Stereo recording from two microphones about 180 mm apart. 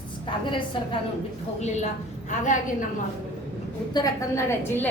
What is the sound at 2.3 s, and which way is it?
Speech, 45° left (ahead or behind).